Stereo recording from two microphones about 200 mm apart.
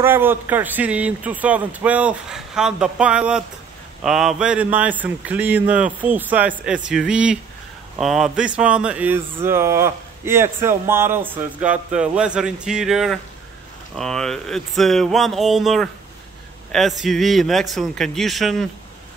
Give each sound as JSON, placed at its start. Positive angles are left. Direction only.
{"t": 0.0, "sound": "speech", "side_deg": -10}